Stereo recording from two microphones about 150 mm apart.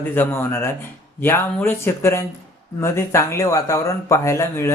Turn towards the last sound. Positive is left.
turn(degrees=15)  # may be behind; listen again after turning